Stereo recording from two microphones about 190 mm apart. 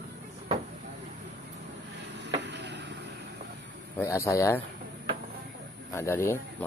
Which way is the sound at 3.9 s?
15° left (ahead or behind).